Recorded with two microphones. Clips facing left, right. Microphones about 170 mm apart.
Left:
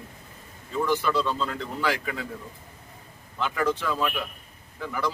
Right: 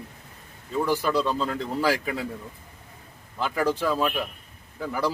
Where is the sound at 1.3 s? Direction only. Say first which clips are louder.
Right 3 dB; 35° right (ahead or behind).